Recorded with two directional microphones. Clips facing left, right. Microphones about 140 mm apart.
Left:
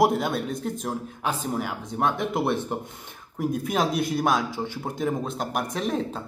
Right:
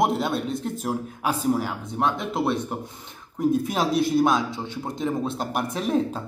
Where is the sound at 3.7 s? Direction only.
Centre (ahead or behind).